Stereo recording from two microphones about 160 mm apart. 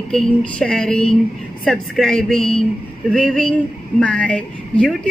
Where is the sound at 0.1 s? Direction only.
5° left (ahead or behind).